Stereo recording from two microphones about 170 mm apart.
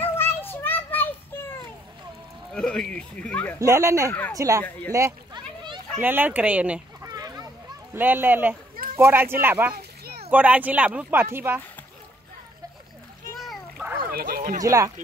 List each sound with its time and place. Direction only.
0.0 s child singing: 10° left (ahead or behind)
2.5 s speech: 5° left (ahead or behind)
3.5 s speech: 20° right (ahead or behind)
4.9 s a sound: 20° right (ahead or behind)
5.9 s speech: 10° right (ahead or behind)
7.1 s a sound: 20° right (ahead or behind)
7.9 s speech: 10° right (ahead or behind)
9.8 s a sound: 65° right (ahead or behind)
10.3 s speech: 10° right (ahead or behind)
13.4 s splash: centre (ahead or behind)
14.1 s speech: 55° right (ahead or behind)
14.6 s speech: 20° right (ahead or behind)